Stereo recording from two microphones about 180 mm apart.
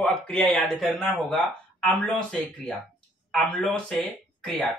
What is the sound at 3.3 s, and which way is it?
Speech, 5° left (ahead or behind).